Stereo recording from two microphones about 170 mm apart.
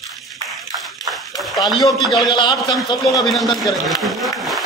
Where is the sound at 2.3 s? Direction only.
25° left (ahead or behind).